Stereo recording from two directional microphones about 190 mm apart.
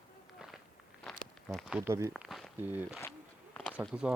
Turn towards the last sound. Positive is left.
turn(degrees=-5)  # may be behind; listen again after turning